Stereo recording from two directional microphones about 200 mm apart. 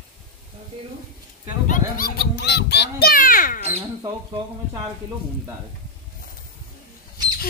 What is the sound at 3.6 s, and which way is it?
Speech, 30° right (ahead or behind).